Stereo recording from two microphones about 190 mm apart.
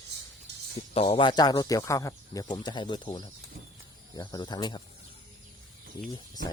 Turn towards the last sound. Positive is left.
turn(degrees=20)  # may be behind; listen again after turning